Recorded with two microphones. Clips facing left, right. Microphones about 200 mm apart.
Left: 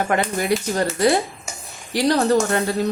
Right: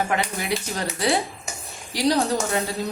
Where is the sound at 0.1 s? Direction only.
50° left (ahead or behind).